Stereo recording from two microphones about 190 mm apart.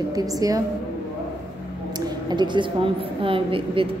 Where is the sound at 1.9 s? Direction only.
20° right (ahead or behind).